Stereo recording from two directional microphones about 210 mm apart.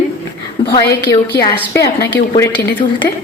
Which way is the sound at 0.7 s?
50° left (ahead or behind).